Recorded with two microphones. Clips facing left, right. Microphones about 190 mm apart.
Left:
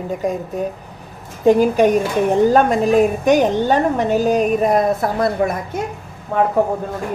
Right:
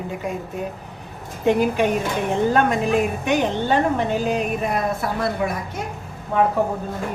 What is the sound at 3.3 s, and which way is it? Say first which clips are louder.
Speech: left 6 dB; 40° left (ahead or behind).